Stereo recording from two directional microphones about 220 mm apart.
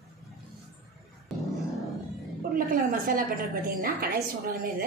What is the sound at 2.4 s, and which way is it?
A woman's voice, 40° right (ahead or behind).